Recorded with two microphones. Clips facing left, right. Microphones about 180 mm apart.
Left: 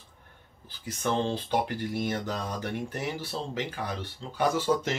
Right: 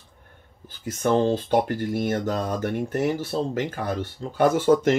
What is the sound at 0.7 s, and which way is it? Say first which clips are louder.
Speech: right 7 dB; 50° right (ahead or behind).